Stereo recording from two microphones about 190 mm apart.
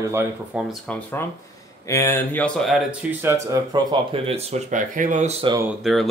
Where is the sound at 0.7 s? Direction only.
10° left (ahead or behind).